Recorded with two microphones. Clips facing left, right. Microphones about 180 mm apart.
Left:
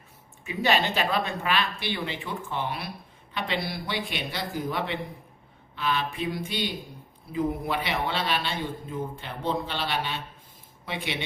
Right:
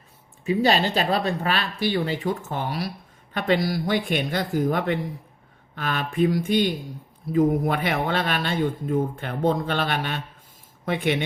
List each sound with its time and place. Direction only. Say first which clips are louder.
0.4 s speech: right 5 dB; 40° right (ahead or behind)